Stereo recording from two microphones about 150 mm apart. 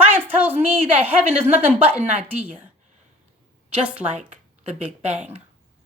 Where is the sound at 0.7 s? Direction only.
10° right (ahead or behind).